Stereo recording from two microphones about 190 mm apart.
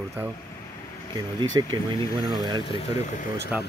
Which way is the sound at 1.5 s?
25° right (ahead or behind).